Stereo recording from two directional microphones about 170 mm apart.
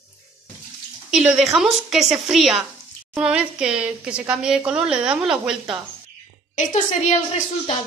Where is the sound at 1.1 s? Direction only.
Centre (ahead or behind).